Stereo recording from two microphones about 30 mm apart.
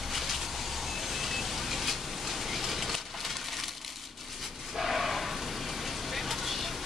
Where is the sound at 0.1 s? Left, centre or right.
Centre.